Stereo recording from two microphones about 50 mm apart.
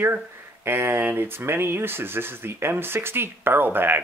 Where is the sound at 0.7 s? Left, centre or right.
Right.